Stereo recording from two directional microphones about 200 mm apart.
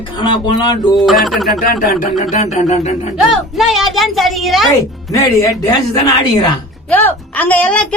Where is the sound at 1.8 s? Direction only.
45° left (ahead or behind).